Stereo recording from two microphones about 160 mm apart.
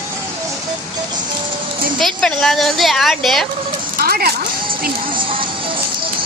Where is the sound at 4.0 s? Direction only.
70° right (ahead or behind).